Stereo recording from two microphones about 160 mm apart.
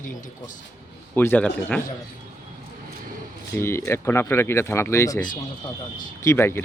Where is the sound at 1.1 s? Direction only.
10° left (ahead or behind).